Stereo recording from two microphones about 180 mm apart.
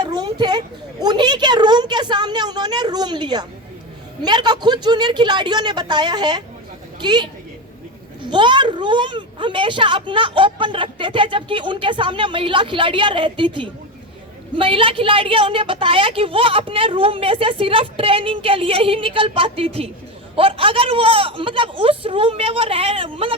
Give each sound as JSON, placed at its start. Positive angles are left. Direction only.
{"t": 0.0, "sound": "a sound", "side_deg": -20}
{"t": 1.0, "sound": "a woman's voice", "side_deg": -25}
{"t": 8.3, "sound": "a man's voice", "side_deg": -25}